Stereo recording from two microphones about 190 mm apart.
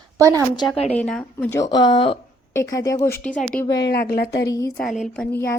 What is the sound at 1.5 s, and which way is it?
Speech, 20° left (ahead or behind).